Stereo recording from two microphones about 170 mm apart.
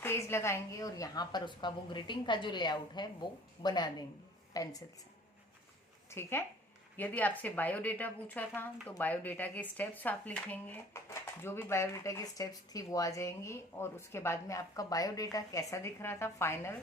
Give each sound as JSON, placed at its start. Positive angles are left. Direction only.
{"t": 0.0, "sound": "a woman's voice", "side_deg": 15}
{"t": 6.1, "sound": "a woman's voice", "side_deg": 15}